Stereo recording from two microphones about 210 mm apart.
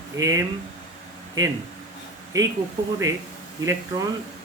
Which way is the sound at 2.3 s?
15° right (ahead or behind).